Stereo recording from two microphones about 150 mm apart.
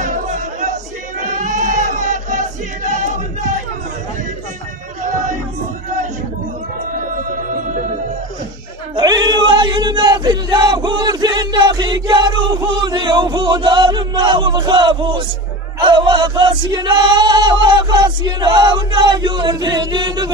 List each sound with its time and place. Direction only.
0.0 s a sound: 55° right (ahead or behind)
1.2 s battle cry: 60° right (ahead or behind)
8.9 s male singing: 30° right (ahead or behind)
15.8 s choir: 30° right (ahead or behind)